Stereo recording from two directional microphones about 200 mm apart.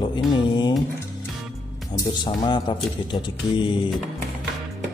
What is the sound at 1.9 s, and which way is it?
Mantra, 20° left (ahead or behind).